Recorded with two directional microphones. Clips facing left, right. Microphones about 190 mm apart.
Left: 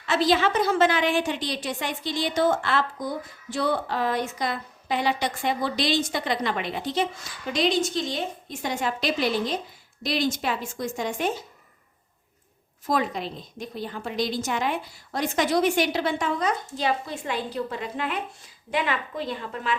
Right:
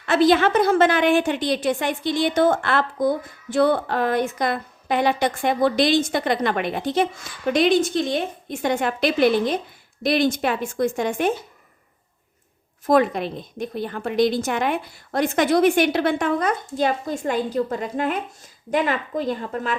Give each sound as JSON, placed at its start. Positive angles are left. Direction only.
{"t": 0.0, "sound": "a woman's voice", "side_deg": -55}
{"t": 12.8, "sound": "a woman's voice", "side_deg": -55}